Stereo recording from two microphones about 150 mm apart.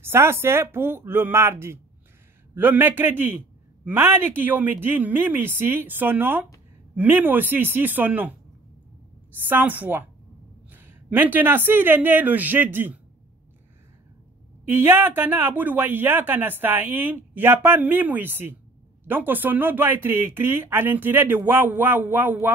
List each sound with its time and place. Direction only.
0.0 s speech: 15° right (ahead or behind)
9.5 s a man's voice: 10° right (ahead or behind)
14.7 s speech: 15° right (ahead or behind)